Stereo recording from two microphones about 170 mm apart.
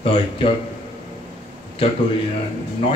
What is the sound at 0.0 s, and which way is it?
Speech, 30° left (ahead or behind).